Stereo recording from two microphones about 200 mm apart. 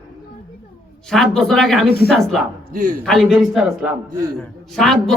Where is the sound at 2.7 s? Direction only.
45° right (ahead or behind).